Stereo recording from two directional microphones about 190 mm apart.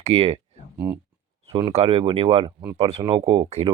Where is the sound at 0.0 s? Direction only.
30° right (ahead or behind).